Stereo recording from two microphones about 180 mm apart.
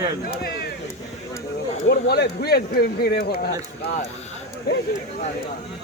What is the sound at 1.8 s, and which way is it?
Speech, 65° left (ahead or behind).